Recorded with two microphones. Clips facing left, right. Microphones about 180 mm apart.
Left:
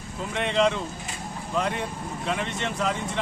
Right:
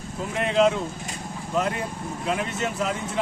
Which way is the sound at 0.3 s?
5° right (ahead or behind).